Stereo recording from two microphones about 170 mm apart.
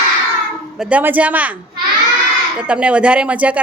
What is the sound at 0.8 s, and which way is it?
Speech, 10° right (ahead or behind).